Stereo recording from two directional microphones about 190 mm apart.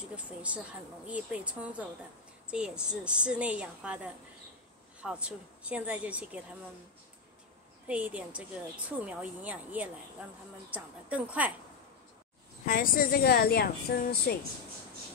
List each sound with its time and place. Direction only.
0.0 s a woman's voice: 5° right (ahead or behind)
7.9 s speech: 5° right (ahead or behind)
12.6 s a woman's voice: 45° left (ahead or behind)